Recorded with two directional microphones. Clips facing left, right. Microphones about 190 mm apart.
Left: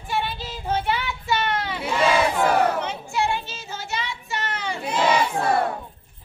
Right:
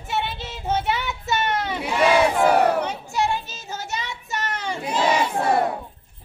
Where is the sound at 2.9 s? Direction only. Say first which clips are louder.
Right 1 dB; 40° right (ahead or behind).